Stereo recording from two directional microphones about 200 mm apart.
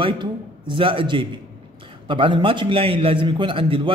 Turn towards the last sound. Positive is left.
turn(degrees=-25)  # may be behind; listen again after turning